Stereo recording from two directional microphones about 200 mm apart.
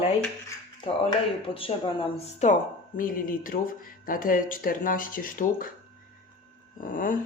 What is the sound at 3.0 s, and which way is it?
Speech, 45° left (ahead or behind).